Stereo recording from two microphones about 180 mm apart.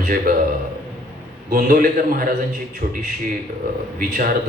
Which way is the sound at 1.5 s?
50° right (ahead or behind).